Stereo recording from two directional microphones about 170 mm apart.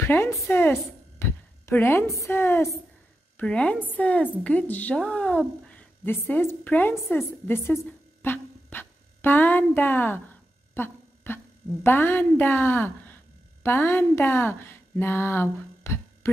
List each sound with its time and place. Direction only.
0.0 s a woman's voice: 15° left (ahead or behind)